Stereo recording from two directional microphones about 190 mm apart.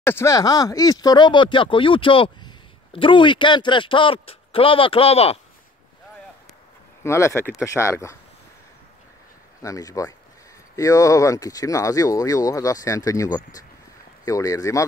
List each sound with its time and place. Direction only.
0.0 s speech: 15° left (ahead or behind); by 5.4 s 30° left (ahead or behind)
7.0 s speech: 15° left (ahead or behind)
9.6 s speech: 15° left (ahead or behind)